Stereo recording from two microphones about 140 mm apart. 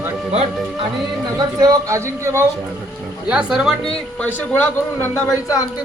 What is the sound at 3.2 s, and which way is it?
Speech, 5° right (ahead or behind).